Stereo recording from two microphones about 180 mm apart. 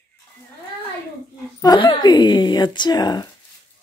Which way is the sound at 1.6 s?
25° left (ahead or behind).